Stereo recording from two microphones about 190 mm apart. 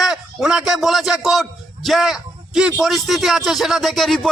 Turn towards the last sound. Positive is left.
turn(degrees=0)  # may be behind; listen again after turning